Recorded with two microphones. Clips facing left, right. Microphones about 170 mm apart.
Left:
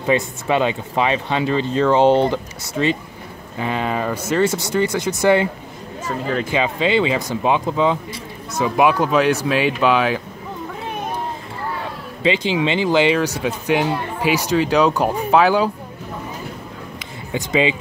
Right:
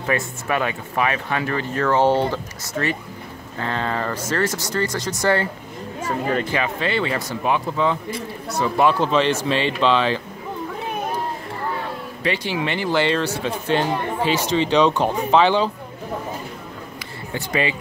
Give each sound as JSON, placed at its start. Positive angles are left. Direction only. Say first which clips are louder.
{"t": 0.0, "sound": "speech", "louder": "left 5 dB", "side_deg": 20}
{"t": 6.5, "sound": "speech", "louder": "left 4 dB", "side_deg": 20}
{"t": 12.3, "sound": "speech", "louder": "left 5 dB", "side_deg": 20}
{"t": 17.0, "sound": "a sound", "louder": "left 4 dB", "side_deg": 20}